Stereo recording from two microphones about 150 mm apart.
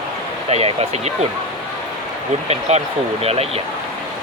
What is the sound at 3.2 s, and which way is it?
Speech, 45° right (ahead or behind).